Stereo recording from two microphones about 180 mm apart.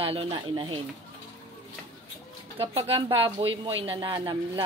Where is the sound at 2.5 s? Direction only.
30° right (ahead or behind).